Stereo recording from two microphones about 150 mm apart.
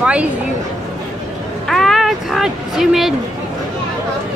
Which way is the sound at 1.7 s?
Centre (ahead or behind).